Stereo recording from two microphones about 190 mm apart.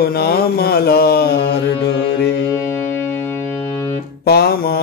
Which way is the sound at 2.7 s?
10° left (ahead or behind).